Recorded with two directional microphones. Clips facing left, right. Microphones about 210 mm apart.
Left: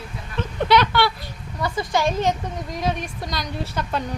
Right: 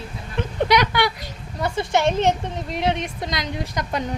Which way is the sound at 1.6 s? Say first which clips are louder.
Right 2 dB; 25° right (ahead or behind).